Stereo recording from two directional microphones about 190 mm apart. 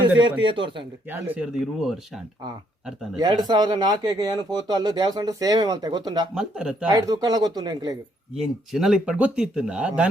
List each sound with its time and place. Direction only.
0.2 s speech: 25° right (ahead or behind)
1.0 s speech: 10° right (ahead or behind)
3.2 s speech: 20° right (ahead or behind)
6.3 s speech: 5° right (ahead or behind)
6.9 s speech: 20° right (ahead or behind)
8.4 s speech: centre (ahead or behind)